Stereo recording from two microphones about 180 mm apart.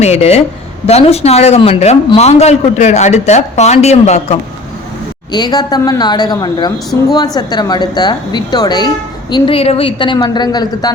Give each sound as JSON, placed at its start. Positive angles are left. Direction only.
{"t": 0.0, "sound": "a man's voice", "side_deg": 35}
{"t": 5.3, "sound": "a woman's voice", "side_deg": 25}